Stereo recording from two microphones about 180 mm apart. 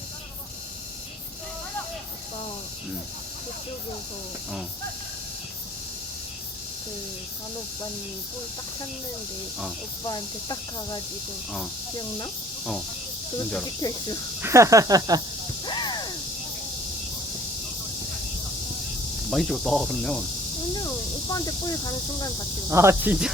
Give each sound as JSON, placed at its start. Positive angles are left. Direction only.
{"t": 10.1, "sound": "speech", "side_deg": 25}
{"t": 13.8, "sound": "speech", "side_deg": 25}
{"t": 14.4, "sound": "a sound", "side_deg": -15}
{"t": 15.6, "sound": "snake", "side_deg": 25}
{"t": 19.3, "sound": "speech", "side_deg": 0}
{"t": 20.7, "sound": "speech", "side_deg": 20}
{"t": 22.7, "sound": "a sound", "side_deg": -15}